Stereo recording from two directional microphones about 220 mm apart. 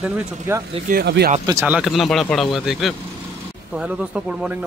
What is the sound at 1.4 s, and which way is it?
Speech, 10° right (ahead or behind).